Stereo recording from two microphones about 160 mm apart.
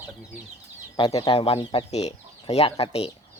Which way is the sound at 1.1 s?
35° left (ahead or behind).